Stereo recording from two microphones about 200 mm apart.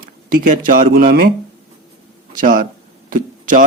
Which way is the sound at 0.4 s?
40° right (ahead or behind).